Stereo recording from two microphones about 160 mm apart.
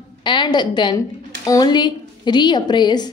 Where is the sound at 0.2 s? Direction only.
30° left (ahead or behind).